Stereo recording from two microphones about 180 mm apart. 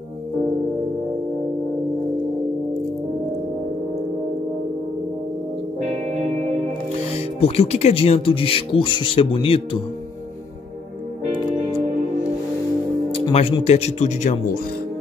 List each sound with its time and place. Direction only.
7.3 s speech: 35° left (ahead or behind)
13.2 s speech: 35° left (ahead or behind)